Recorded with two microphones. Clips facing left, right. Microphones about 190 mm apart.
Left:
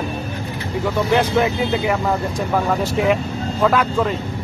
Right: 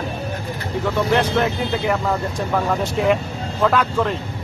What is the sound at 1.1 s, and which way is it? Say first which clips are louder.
Speech: left 3 dB; 5° left (ahead or behind).